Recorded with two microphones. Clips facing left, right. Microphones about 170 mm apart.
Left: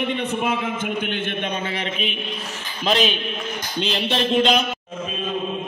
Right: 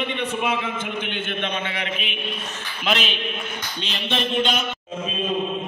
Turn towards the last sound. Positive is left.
turn(degrees=35)  # may be behind; listen again after turning